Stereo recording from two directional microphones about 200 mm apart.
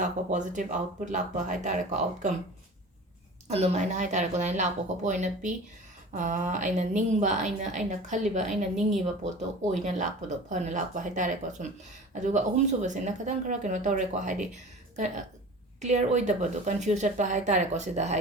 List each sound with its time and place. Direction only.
0.0 s a woman's voice: 40° right (ahead or behind)
3.5 s a woman's voice: 35° right (ahead or behind)
9.7 s a woman's voice: 35° right (ahead or behind)